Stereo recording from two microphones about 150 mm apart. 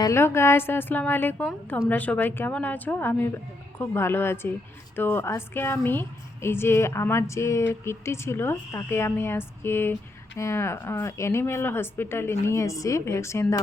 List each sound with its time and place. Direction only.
0.0 s a woman's voice: 15° left (ahead or behind)